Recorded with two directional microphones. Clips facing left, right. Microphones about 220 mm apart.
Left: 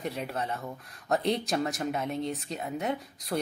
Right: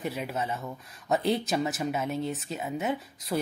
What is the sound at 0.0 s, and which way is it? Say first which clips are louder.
Speech: right 1 dB; 5° right (ahead or behind).